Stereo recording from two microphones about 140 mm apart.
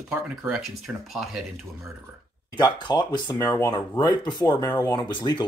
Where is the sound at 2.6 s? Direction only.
30° left (ahead or behind).